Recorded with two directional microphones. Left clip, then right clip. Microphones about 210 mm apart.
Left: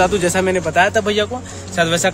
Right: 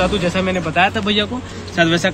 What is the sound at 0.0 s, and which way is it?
Speech, 60° left (ahead or behind).